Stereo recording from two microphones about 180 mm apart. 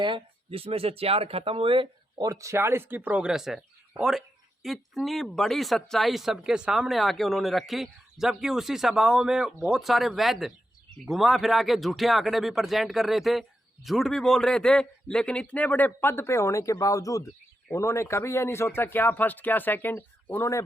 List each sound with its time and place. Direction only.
0.0 s a man's voice: 30° right (ahead or behind); by 20.6 s 10° left (ahead or behind)